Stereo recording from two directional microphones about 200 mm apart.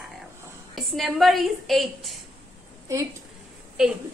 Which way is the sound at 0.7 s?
Centre (ahead or behind).